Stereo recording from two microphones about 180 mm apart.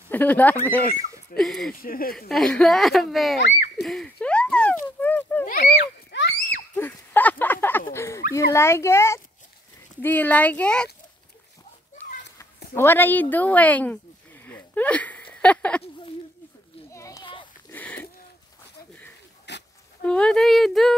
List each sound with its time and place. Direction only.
0.1 s a woman's voice: 10° left (ahead or behind)
1.8 s speech: 55° left (ahead or behind)
2.1 s speech: centre (ahead or behind)
5.0 s a sound: 10° left (ahead or behind)
6.1 s horse: 75° left (ahead or behind)
6.7 s a sound: 10° left (ahead or behind)
7.9 s a woman's voice: 15° left (ahead or behind)
12.0 s children playing: 10° left (ahead or behind)
12.7 s a woman's voice: 10° left (ahead or behind)
14.4 s a sound: 10° left (ahead or behind)
16.9 s children playing: 15° left (ahead or behind)
17.6 s a sound: 10° left (ahead or behind)
19.5 s pig: 70° left (ahead or behind)
20.0 s speech: 5° left (ahead or behind)